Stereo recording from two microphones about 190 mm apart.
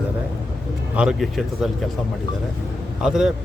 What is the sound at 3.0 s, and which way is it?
Speech, 5° right (ahead or behind).